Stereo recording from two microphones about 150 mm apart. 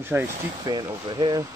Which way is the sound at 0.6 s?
30° right (ahead or behind).